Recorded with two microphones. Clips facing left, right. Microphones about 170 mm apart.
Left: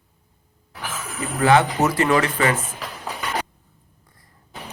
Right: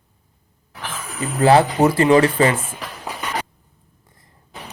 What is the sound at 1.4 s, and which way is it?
Speech, 30° right (ahead or behind).